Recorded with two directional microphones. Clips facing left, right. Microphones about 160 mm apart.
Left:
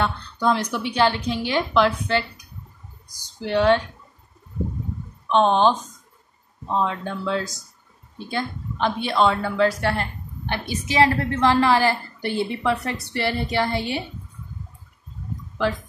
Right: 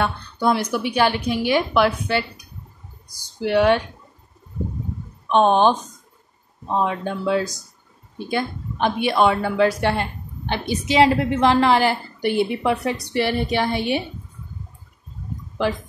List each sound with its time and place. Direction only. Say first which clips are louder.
0.0 s a woman's voice: right 1 dB; 10° right (ahead or behind)
5.3 s a woman's voice: right 2 dB; 15° right (ahead or behind)